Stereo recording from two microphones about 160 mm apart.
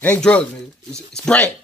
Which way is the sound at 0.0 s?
10° left (ahead or behind).